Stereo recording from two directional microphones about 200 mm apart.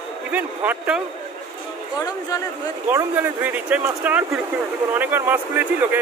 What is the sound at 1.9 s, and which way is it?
Speech, 15° left (ahead or behind).